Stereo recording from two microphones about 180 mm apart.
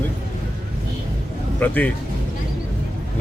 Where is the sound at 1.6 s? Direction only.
10° left (ahead or behind).